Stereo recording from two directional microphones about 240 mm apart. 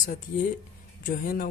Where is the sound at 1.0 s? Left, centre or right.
Left.